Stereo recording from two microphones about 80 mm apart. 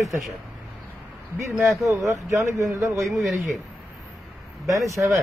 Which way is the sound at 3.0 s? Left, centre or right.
Centre.